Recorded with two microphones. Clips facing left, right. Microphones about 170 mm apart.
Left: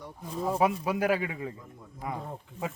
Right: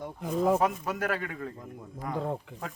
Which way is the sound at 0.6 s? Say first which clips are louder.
Left 2 dB; 10° left (ahead or behind).